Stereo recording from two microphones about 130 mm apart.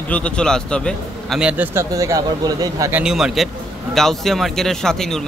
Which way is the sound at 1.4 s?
10° right (ahead or behind).